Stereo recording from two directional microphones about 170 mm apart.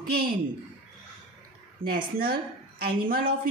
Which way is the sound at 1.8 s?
65° right (ahead or behind).